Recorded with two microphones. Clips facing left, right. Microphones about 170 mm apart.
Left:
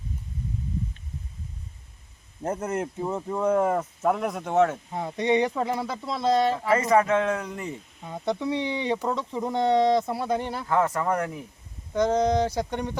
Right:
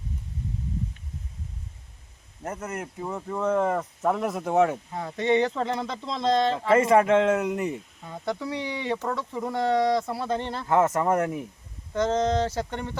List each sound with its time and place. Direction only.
2.4 s speech: 30° left (ahead or behind)
3.0 s speech: 15° left (ahead or behind); by 4.8 s 10° right (ahead or behind)
4.9 s speech: 20° left (ahead or behind)
6.8 s speech: 25° right (ahead or behind)
8.0 s speech: 20° left (ahead or behind)
10.7 s speech: 25° right (ahead or behind)
11.9 s speech: 15° left (ahead or behind)